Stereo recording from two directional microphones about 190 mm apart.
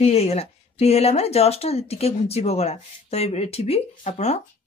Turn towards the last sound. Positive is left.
turn(degrees=35)  # may be behind; listen again after turning